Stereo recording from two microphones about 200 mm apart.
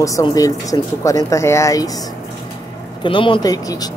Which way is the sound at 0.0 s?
15° left (ahead or behind).